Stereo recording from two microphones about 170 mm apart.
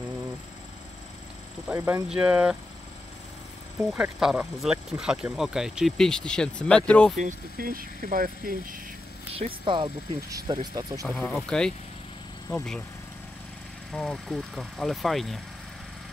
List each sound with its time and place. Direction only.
1.7 s speech: 15° right (ahead or behind)
3.9 s speech: 5° right (ahead or behind)
7.2 s speech: 55° right (ahead or behind)
9.3 s speech: 30° right (ahead or behind)
11.1 s speech: 5° left (ahead or behind)
13.9 s speech: centre (ahead or behind)